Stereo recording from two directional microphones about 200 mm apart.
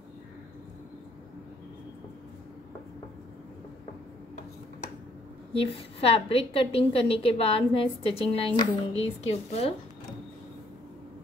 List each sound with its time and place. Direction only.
5.5 s a woman's voice: 30° left (ahead or behind)